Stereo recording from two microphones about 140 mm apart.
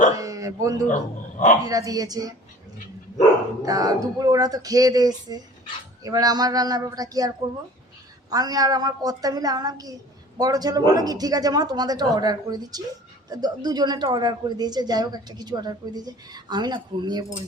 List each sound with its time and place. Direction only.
0.1 s a man's voice: 25° right (ahead or behind)
3.7 s a woman's voice: 25° right (ahead or behind)
8.3 s a woman's voice: 25° right (ahead or behind)